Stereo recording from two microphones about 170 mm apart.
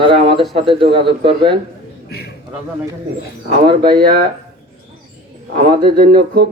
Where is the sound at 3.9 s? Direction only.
60° right (ahead or behind).